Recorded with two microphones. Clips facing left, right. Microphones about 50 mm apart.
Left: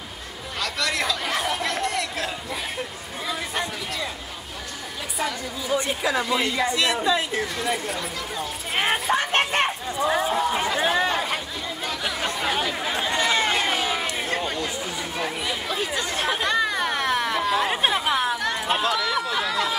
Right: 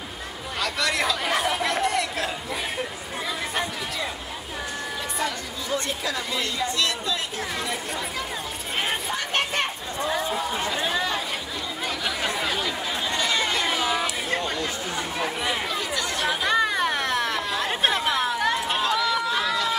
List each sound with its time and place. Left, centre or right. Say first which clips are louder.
0.6 s chatter: right 1 dB; centre
5.2 s a woman's voice: left 4 dB; centre
8.8 s a sound: left 8 dB; left
9.9 s a woman's voice: left 4 dB; centre
10.8 s chatter: left 5 dB; left
12.0 s chatter: even; centre
12.6 s run: left 2 dB; centre
15.8 s chatter: left 1 dB; left
16.3 s chatter: right 1 dB; centre
18.8 s run: even; centre